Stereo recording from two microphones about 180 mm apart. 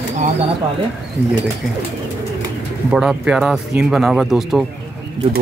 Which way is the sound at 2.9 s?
5° right (ahead or behind).